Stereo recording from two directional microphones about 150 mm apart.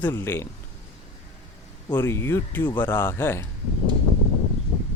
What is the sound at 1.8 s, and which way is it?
Speech, 15° left (ahead or behind).